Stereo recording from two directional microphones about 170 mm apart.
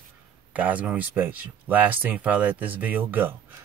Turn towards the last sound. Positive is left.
turn(degrees=-10)  # may be behind; listen again after turning